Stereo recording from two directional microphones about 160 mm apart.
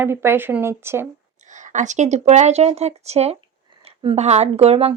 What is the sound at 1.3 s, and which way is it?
Speech, 50° right (ahead or behind).